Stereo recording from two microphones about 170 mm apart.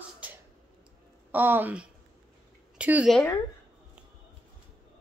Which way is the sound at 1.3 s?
10° right (ahead or behind).